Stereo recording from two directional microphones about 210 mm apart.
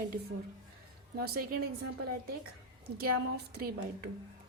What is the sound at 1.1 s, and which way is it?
Speech, 45° right (ahead or behind).